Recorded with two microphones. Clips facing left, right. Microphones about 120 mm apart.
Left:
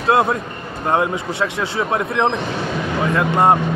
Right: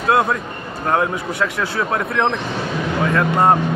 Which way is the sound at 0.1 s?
25° left (ahead or behind).